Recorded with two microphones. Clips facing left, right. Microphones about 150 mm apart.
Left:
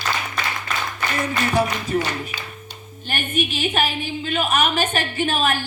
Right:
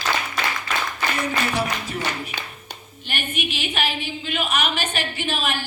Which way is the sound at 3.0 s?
45° left (ahead or behind).